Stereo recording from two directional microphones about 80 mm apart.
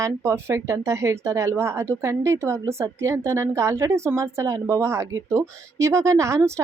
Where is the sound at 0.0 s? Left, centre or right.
Right.